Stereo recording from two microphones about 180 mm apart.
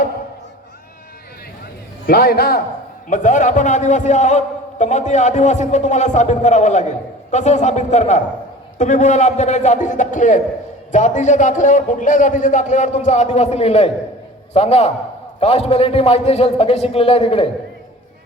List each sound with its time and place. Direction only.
2.0 s a man's voice: 60° left (ahead or behind)
3.1 s a man's voice: 45° left (ahead or behind)